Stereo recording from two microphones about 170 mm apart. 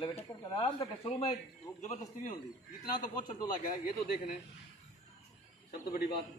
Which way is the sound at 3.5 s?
50° left (ahead or behind).